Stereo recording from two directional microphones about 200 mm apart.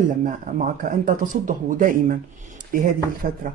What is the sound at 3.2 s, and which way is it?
Speech, 40° right (ahead or behind).